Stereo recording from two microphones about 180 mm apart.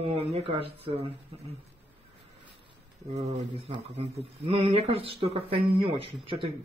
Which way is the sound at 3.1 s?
35° right (ahead or behind).